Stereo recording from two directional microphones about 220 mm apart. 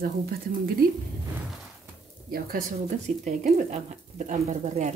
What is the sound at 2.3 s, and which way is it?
Speech, 40° right (ahead or behind).